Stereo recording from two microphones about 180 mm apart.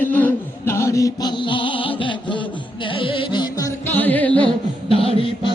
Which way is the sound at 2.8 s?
30° left (ahead or behind).